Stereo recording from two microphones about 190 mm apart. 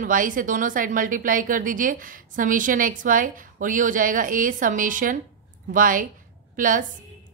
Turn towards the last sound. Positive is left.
turn(degrees=-45)  # may be behind; listen again after turning